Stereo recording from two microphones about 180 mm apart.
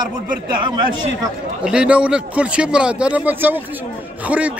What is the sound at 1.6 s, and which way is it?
A man's voice, 5° right (ahead or behind).